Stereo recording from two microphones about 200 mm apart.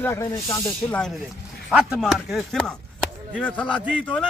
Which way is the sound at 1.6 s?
5° right (ahead or behind).